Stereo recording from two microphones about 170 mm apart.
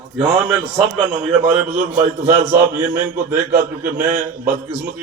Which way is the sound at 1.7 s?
50° right (ahead or behind).